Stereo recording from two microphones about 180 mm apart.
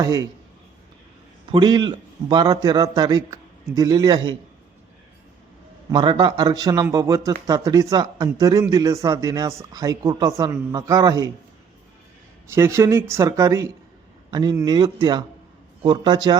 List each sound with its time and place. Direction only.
0.0 s speech: 20° right (ahead or behind)
1.5 s speech: 25° right (ahead or behind)
5.9 s speech: 25° right (ahead or behind)
12.5 s speech: 15° right (ahead or behind)